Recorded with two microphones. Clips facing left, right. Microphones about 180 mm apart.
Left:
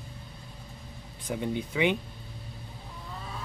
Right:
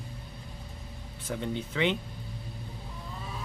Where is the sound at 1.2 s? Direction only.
15° left (ahead or behind).